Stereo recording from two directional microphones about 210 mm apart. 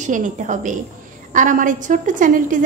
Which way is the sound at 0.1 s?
35° right (ahead or behind).